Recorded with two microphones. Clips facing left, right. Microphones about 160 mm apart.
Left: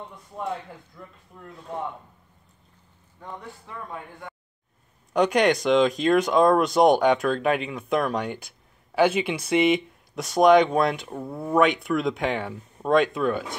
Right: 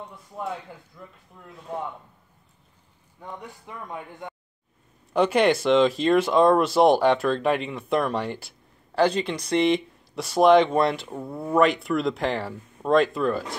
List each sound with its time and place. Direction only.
0.1 s speech: centre (ahead or behind)
3.2 s a man's voice: 15° right (ahead or behind)
5.1 s speech: centre (ahead or behind)